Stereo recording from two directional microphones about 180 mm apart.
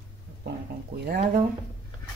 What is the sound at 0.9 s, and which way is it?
Speech, 60° right (ahead or behind).